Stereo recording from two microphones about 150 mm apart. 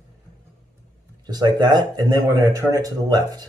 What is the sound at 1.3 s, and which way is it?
Speech, 30° right (ahead or behind).